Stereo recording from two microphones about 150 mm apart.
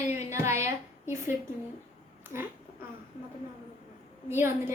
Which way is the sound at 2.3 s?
15° right (ahead or behind).